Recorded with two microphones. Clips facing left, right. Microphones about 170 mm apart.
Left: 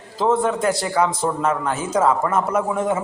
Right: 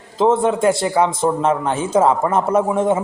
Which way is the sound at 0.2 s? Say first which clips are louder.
Right 4 dB; 25° right (ahead or behind).